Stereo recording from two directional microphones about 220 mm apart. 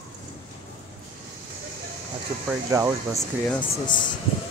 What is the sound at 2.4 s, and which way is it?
Speech, 10° right (ahead or behind).